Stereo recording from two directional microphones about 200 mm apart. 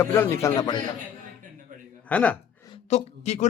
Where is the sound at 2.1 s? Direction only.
5° left (ahead or behind).